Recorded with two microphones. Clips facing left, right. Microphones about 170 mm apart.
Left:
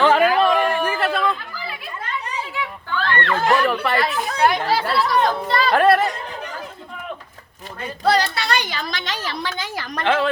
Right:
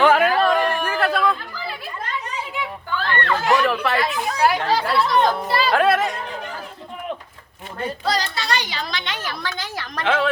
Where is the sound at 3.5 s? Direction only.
Centre (ahead or behind).